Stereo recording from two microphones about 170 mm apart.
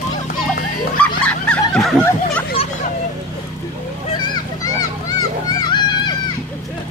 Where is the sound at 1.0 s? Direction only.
5° left (ahead or behind).